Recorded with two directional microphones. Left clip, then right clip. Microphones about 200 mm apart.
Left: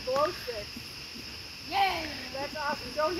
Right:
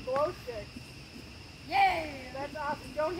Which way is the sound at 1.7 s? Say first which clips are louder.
Right 2 dB; 25° right (ahead or behind).